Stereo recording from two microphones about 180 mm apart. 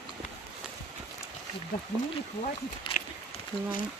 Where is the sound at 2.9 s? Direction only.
30° left (ahead or behind).